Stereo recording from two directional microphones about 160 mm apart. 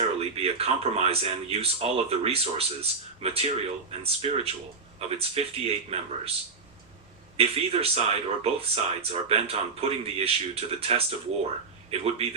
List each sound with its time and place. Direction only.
0.2 s speech: 40° right (ahead or behind)
7.3 s speech: 40° right (ahead or behind)